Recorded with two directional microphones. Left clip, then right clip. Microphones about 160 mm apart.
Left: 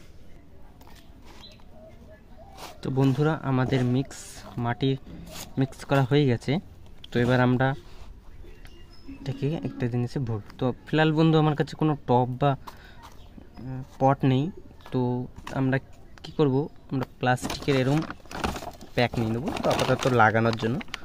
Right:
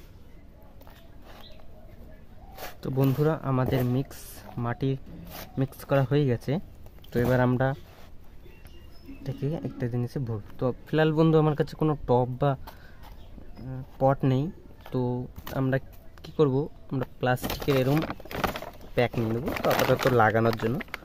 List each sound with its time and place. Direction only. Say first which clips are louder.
2.8 s speech: left 1 dB; 5° right (ahead or behind)
9.2 s speech: left 2 dB; centre (ahead or behind)
18.9 s speech: even; centre (ahead or behind)
19.6 s speech: right 1 dB; 20° right (ahead or behind)
20.1 s speech: left 3 dB; 5° right (ahead or behind)